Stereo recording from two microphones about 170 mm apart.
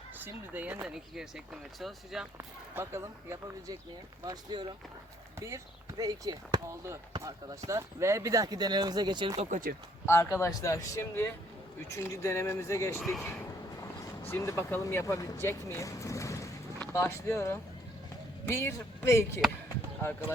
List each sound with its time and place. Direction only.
0.2 s speech: 10° right (ahead or behind)
2.4 s speech: 15° right (ahead or behind)
6.0 s speech: 20° right (ahead or behind)
9.5 s speech: 55° right (ahead or behind)
10.1 s speech: 15° left (ahead or behind)
13.0 s speech: centre (ahead or behind)
14.3 s speech: 15° left (ahead or behind)
19.6 s chop: 15° left (ahead or behind)